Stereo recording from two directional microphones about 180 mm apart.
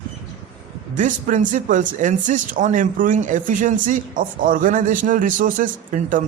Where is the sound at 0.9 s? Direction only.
45° right (ahead or behind).